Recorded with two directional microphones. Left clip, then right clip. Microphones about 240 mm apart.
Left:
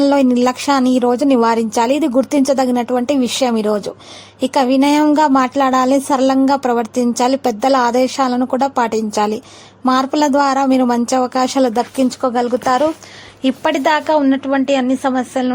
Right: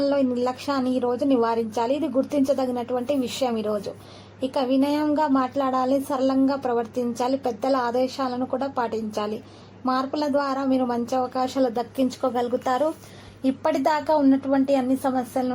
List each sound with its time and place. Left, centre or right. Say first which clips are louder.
0.0 s a woman's voice: left 9 dB; left